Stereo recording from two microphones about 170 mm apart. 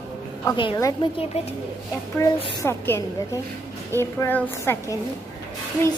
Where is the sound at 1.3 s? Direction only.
40° left (ahead or behind).